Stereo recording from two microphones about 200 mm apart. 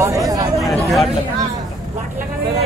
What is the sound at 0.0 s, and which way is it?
Chatter, 15° right (ahead or behind).